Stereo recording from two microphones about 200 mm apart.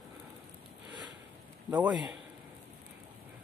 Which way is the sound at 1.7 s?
5° right (ahead or behind).